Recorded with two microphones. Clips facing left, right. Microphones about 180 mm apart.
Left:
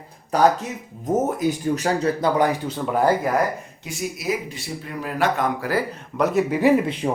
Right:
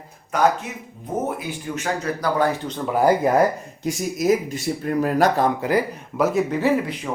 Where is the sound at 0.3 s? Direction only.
35° left (ahead or behind).